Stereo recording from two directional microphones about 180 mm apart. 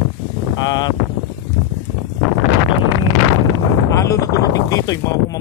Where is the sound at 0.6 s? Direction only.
20° left (ahead or behind).